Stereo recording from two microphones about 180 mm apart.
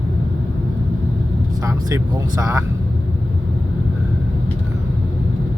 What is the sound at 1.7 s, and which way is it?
Speech, 20° right (ahead or behind).